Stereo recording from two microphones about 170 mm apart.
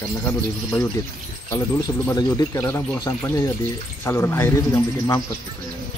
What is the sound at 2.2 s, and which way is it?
Speech, 20° left (ahead or behind).